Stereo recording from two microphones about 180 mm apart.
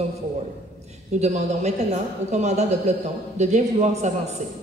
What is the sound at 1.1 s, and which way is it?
A woman's voice, 40° right (ahead or behind).